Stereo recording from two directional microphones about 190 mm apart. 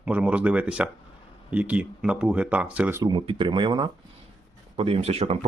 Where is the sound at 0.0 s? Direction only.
5° right (ahead or behind).